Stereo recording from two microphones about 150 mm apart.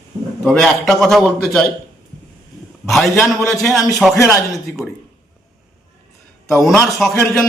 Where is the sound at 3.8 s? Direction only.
Centre (ahead or behind).